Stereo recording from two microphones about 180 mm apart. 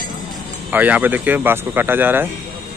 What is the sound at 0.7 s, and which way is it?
Speech, 10° right (ahead or behind).